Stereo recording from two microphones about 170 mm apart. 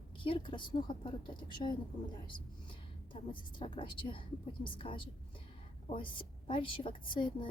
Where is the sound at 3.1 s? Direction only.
30° left (ahead or behind).